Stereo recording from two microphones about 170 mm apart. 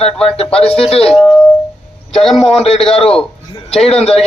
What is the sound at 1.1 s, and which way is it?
Speech, centre (ahead or behind).